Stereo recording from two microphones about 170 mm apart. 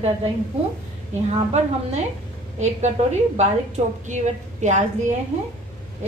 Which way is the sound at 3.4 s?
45° right (ahead or behind).